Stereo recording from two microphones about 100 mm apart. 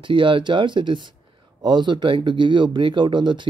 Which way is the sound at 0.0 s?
55° right (ahead or behind).